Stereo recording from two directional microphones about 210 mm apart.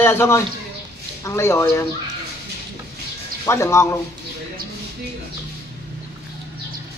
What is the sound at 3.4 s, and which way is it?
Speech, 15° left (ahead or behind).